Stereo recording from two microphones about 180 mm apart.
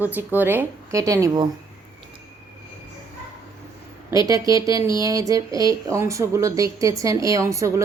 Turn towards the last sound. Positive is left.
turn(degrees=-15)  # may be behind; listen again after turning